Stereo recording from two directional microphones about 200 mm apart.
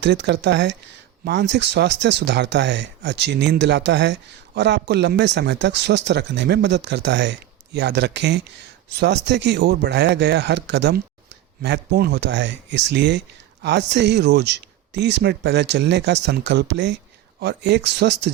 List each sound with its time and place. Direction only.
0.0 s speech: 60° right (ahead or behind)